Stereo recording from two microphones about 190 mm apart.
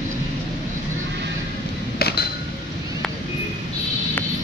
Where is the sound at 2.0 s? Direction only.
55° left (ahead or behind).